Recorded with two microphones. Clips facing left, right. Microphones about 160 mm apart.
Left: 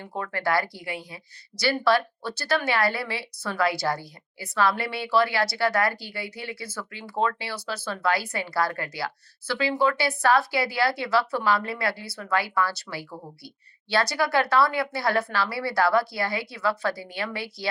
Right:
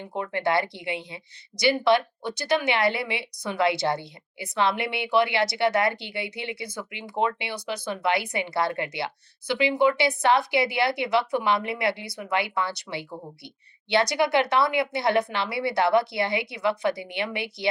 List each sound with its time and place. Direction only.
0.0 s speech: 20° right (ahead or behind)